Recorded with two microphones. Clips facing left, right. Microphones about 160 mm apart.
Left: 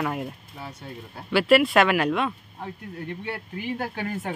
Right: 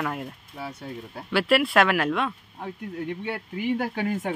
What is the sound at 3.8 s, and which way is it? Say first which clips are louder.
Speech: right 3 dB; 10° right (ahead or behind).